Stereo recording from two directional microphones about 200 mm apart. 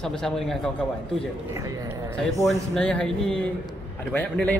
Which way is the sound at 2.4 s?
Centre (ahead or behind).